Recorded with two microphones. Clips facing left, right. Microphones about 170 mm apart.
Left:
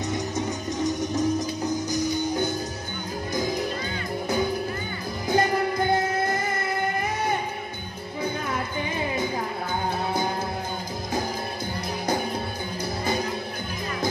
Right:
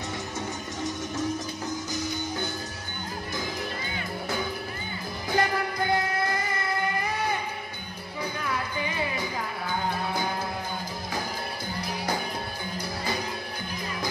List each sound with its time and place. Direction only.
1.1 s music: 15° left (ahead or behind)
3.3 s music: 40° left (ahead or behind)
5.3 s music: 20° left (ahead or behind)
8.9 s music: 20° left (ahead or behind)